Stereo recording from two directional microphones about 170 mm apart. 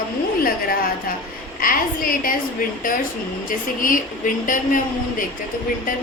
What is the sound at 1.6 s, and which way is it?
Speech, 55° left (ahead or behind).